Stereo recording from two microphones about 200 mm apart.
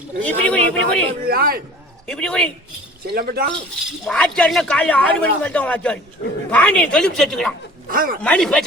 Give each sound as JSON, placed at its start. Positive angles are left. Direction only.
{"t": 0.2, "sound": "a man's voice", "side_deg": 5}
{"t": 1.2, "sound": "a man's voice", "side_deg": -50}
{"t": 2.0, "sound": "a man's voice", "side_deg": 5}
{"t": 3.2, "sound": "a man's voice", "side_deg": -50}
{"t": 4.0, "sound": "a man's voice", "side_deg": 5}
{"t": 7.9, "sound": "a man's voice", "side_deg": -45}
{"t": 8.2, "sound": "a man's voice", "side_deg": 5}